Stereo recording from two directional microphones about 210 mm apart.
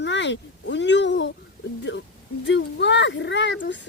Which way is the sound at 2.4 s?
60° left (ahead or behind).